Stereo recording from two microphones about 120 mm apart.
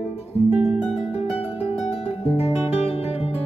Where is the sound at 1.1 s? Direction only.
60° left (ahead or behind).